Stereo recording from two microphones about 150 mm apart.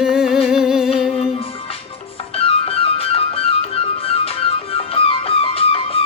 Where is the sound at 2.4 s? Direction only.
40° left (ahead or behind).